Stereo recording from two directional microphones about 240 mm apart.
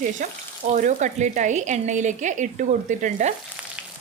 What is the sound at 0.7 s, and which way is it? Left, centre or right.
Speech, right.